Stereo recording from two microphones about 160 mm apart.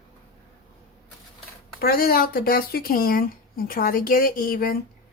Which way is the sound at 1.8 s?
70° left (ahead or behind).